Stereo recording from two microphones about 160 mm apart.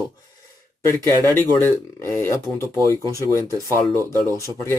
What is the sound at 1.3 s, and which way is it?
Speech, 15° left (ahead or behind).